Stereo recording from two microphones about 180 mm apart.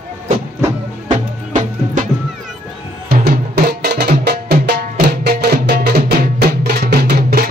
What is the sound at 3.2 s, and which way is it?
Music, 60° right (ahead or behind).